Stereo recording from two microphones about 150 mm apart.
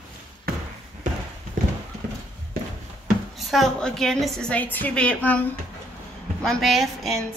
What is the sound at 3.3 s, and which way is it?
A woman's voice, centre (ahead or behind).